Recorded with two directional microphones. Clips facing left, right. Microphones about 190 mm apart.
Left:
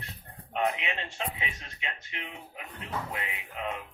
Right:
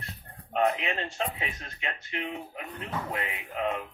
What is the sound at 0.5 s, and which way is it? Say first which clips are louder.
Speech: right 4 dB; 40° right (ahead or behind).